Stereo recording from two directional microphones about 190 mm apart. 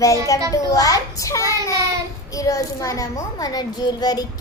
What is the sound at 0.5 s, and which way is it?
A child's voice, 20° left (ahead or behind).